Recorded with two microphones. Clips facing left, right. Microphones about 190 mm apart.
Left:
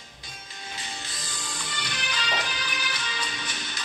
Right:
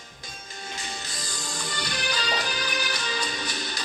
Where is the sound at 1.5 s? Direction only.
40° right (ahead or behind).